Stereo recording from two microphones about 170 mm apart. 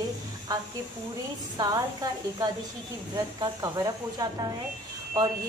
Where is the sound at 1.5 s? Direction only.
25° right (ahead or behind).